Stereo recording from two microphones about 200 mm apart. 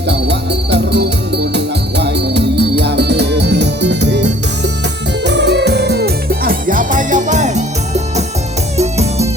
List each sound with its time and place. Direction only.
0.1 s music: 55° right (ahead or behind); by 9.3 s 30° right (ahead or behind)